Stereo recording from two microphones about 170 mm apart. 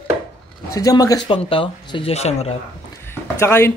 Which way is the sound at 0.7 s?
20° left (ahead or behind).